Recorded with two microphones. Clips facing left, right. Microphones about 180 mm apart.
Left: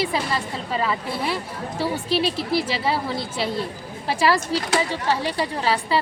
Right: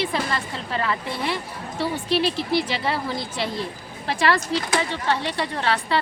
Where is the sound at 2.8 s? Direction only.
5° left (ahead or behind).